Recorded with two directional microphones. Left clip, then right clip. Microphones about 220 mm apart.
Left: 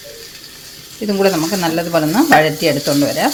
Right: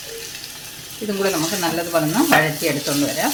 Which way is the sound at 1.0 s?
40° left (ahead or behind).